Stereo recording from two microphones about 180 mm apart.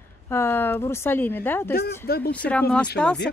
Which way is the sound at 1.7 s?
55° left (ahead or behind).